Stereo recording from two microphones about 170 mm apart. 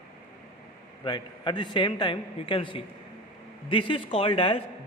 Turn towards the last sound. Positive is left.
turn(degrees=30)  # may be behind; listen again after turning